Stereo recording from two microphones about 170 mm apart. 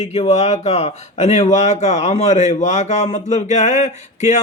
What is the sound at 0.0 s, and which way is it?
A man's voice, 40° left (ahead or behind).